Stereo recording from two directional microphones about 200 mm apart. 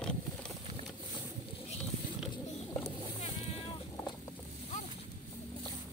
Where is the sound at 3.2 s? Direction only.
30° left (ahead or behind).